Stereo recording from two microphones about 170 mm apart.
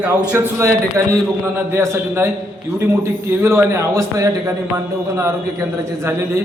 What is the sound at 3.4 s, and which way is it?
A man's voice, 15° right (ahead or behind).